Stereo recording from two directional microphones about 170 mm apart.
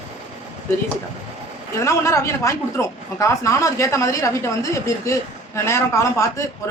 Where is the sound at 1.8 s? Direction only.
15° left (ahead or behind).